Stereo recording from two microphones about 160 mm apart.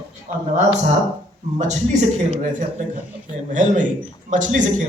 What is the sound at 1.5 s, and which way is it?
A man's voice, 45° right (ahead or behind).